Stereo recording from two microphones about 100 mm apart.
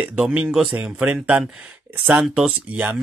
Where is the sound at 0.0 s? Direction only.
15° right (ahead or behind).